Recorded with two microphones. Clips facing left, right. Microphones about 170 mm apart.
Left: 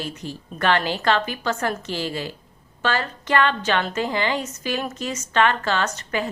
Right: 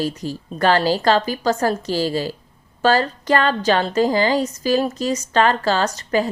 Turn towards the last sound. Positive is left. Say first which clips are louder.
# right 5 dB
turn(degrees=-35)  # may be behind; listen again after turning